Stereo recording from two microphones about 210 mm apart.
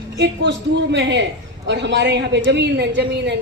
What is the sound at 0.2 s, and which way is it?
A woman's voice, 55° right (ahead or behind).